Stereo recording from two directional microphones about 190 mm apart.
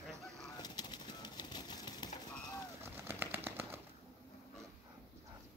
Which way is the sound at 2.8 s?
10° right (ahead or behind).